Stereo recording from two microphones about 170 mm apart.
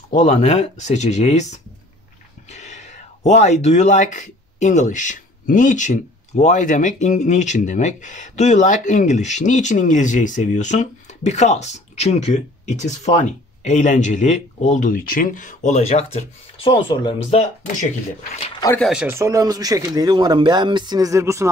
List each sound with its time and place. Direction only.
0.1 s speech: 45° left (ahead or behind)
18.8 s speech: 5° right (ahead or behind)
19.1 s speech: 15° right (ahead or behind)